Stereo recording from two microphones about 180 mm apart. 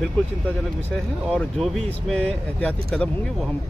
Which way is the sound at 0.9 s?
5° left (ahead or behind).